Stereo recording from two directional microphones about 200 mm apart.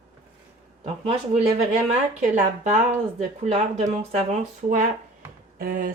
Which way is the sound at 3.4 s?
30° right (ahead or behind).